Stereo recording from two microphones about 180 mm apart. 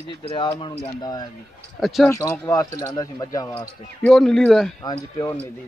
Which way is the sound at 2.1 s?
15° left (ahead or behind).